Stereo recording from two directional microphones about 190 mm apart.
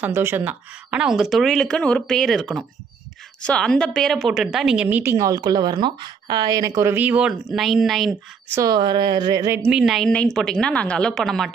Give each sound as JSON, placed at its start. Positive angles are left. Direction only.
{"t": 0.0, "sound": "a woman's voice", "side_deg": -10}
{"t": 8.5, "sound": "a woman's voice", "side_deg": -20}
{"t": 9.7, "sound": "speech", "side_deg": -5}